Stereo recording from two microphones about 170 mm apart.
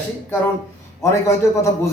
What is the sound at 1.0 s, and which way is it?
Speech, 15° left (ahead or behind).